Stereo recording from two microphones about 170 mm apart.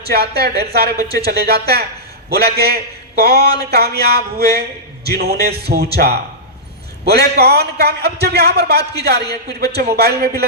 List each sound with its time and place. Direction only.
0.1 s a man's voice: 65° right (ahead or behind)